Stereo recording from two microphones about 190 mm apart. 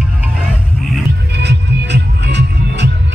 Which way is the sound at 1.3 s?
65° right (ahead or behind).